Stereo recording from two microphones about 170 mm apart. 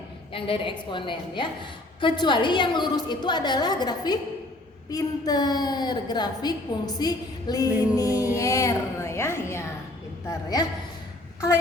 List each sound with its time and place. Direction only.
0.3 s a woman's voice: 30° left (ahead or behind)